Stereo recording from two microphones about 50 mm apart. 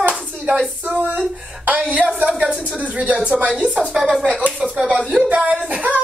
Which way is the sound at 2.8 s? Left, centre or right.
Right.